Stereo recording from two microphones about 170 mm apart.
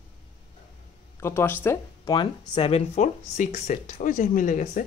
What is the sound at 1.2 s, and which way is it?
Speech, 15° left (ahead or behind).